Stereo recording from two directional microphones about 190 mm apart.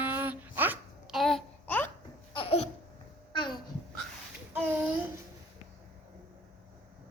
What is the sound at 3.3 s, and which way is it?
Babbling, 25° left (ahead or behind).